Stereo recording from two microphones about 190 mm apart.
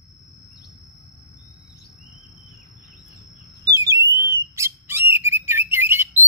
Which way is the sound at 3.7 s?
15° right (ahead or behind).